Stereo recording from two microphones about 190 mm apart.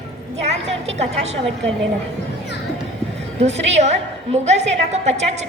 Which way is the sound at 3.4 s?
35° right (ahead or behind).